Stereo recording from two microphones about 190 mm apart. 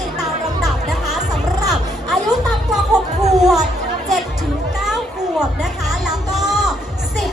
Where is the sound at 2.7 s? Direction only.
Centre (ahead or behind).